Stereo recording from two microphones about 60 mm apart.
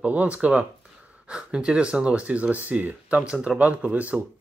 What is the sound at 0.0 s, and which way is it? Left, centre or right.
Speech, right.